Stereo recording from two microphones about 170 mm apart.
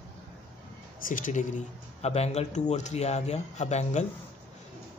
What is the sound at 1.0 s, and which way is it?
Speech, 50° left (ahead or behind).